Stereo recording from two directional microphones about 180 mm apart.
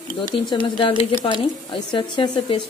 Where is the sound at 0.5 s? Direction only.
25° left (ahead or behind).